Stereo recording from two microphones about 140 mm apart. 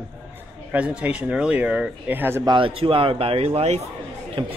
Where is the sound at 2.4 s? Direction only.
35° right (ahead or behind).